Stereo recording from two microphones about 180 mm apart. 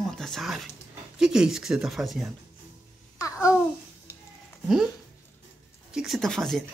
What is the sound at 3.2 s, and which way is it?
Babbling, 15° left (ahead or behind).